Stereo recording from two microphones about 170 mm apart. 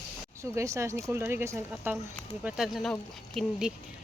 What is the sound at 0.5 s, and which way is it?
Speech, 15° right (ahead or behind).